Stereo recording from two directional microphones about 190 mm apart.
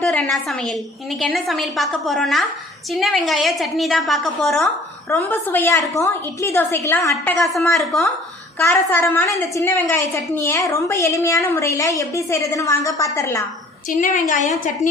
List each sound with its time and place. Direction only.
0.0 s a woman's voice: 5° left (ahead or behind)
7.3 s a woman's voice: centre (ahead or behind)
8.5 s a woman's voice: 15° left (ahead or behind)
14.0 s a woman's voice: 40° left (ahead or behind)